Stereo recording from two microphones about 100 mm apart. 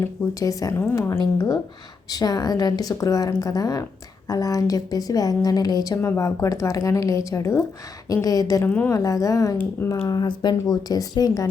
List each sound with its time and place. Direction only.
0.0 s a woman's voice: 35° left (ahead or behind)
1.2 s speech: 40° left (ahead or behind)
6.0 s speech: 30° left (ahead or behind)
8.6 s a woman's voice: 15° left (ahead or behind)
8.9 s speech: 35° left (ahead or behind)